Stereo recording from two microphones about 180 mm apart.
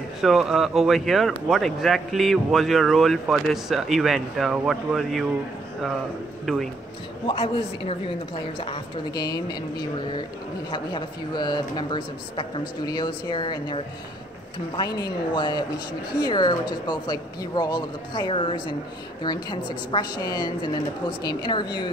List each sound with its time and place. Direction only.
0.2 s speech: centre (ahead or behind)
6.4 s speech: centre (ahead or behind)
7.2 s a woman's voice: 30° left (ahead or behind)